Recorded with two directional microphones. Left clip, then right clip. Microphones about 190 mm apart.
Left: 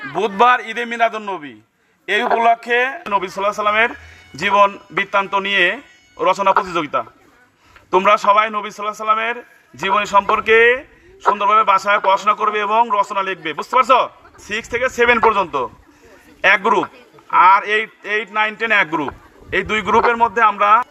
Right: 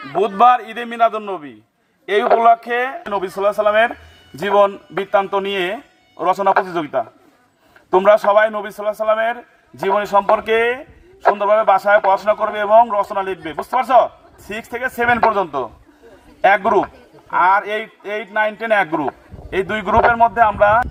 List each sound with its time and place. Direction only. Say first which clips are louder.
0.2 s a man's voice: right 1 dB; 15° right (ahead or behind)